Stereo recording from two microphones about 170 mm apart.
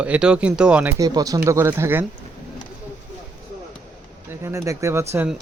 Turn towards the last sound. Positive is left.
turn(degrees=-10)  # may be behind; listen again after turning